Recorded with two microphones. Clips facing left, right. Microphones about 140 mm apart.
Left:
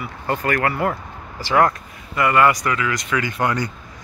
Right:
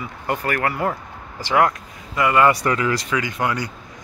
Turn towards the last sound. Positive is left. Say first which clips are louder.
# left 2 dB
turn(degrees=-10)  # may be behind; listen again after turning